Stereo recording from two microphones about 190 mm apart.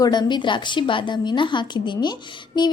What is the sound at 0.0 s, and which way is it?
A woman's voice, 20° left (ahead or behind).